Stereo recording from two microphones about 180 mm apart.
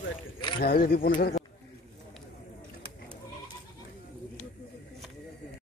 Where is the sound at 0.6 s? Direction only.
55° left (ahead or behind).